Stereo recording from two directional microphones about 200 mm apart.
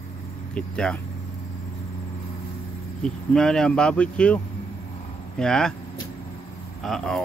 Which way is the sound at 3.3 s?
5° left (ahead or behind).